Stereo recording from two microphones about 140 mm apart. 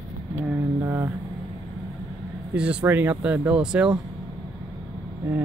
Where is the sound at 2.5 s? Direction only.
10° right (ahead or behind).